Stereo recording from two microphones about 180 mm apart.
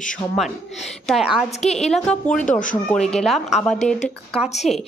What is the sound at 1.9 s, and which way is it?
Speech, 5° left (ahead or behind).